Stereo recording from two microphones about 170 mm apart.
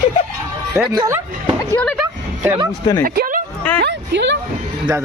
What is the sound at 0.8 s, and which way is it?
Speech, 20° right (ahead or behind).